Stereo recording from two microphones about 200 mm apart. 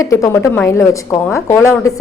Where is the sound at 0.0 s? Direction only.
15° left (ahead or behind).